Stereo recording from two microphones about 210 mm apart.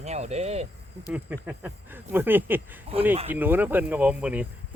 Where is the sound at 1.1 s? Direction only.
10° right (ahead or behind).